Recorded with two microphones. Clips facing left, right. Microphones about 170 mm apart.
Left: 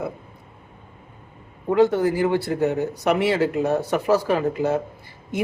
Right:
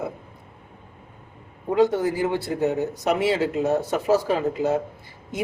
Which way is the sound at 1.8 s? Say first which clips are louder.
Left 2 dB; 20° right (ahead or behind).